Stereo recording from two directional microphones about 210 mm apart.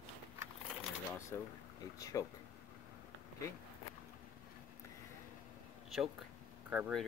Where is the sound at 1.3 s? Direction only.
10° left (ahead or behind).